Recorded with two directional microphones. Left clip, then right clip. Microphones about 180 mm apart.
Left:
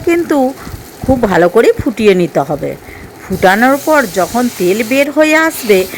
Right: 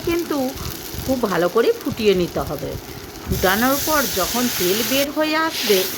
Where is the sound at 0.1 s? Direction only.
30° left (ahead or behind).